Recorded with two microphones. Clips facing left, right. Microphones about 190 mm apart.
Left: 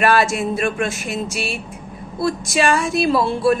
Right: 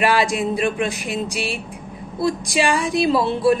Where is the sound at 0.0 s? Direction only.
15° right (ahead or behind).